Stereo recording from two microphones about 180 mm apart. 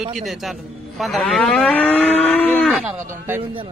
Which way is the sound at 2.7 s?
5° right (ahead or behind).